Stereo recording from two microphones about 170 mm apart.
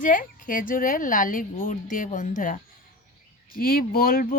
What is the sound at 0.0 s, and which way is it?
A woman's voice, 50° left (ahead or behind).